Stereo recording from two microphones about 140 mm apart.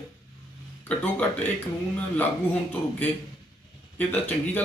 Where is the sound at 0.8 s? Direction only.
10° left (ahead or behind).